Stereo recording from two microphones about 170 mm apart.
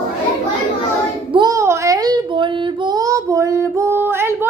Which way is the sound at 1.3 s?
20° right (ahead or behind).